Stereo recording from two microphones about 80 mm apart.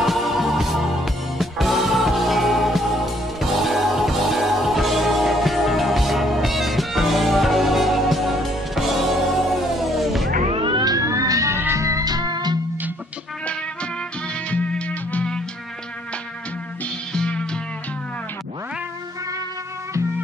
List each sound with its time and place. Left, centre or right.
0.0 s music: centre
10.6 s music: right
10.9 s music: right
11.5 s music: right
14.5 s music: centre
17.1 s music: centre